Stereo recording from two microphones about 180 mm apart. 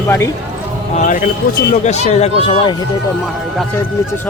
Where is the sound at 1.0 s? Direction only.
45° left (ahead or behind).